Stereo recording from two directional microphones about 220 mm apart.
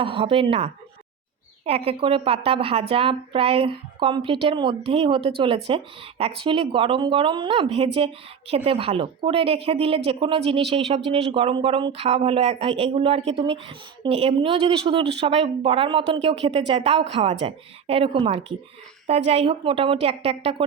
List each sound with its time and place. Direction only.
0.0 s a woman's voice: 25° right (ahead or behind)